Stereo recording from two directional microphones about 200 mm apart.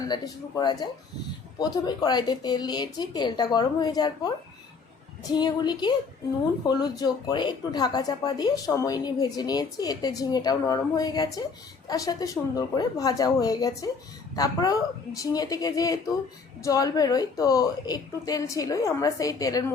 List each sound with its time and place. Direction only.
0.1 s speech: 20° left (ahead or behind)
5.3 s a woman's voice: 20° left (ahead or behind)